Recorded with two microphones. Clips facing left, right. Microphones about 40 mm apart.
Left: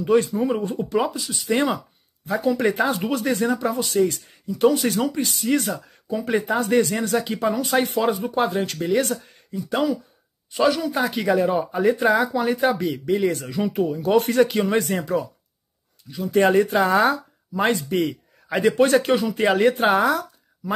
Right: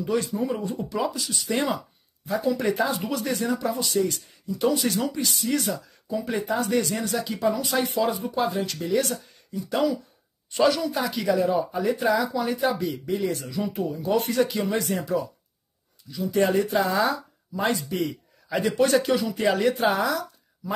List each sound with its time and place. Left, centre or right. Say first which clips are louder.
0.0 s speech: left 6 dB; left
1.1 s speech: left 1 dB; centre
1.5 s speech: left 5 dB; left
10.5 s speech: left 1 dB; centre
10.8 s speech: left 3 dB; left
16.1 s speech: left 4 dB; left